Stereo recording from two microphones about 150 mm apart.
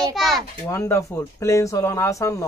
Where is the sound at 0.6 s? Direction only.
20° left (ahead or behind).